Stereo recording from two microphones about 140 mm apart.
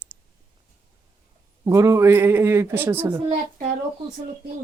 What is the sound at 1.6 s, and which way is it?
A man's voice, 20° right (ahead or behind).